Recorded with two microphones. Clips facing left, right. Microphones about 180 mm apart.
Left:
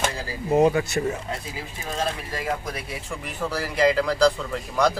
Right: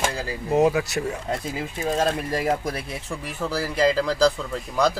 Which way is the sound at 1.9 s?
40° right (ahead or behind).